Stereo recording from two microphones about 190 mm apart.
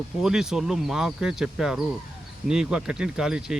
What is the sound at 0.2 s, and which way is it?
Speech, 5° right (ahead or behind).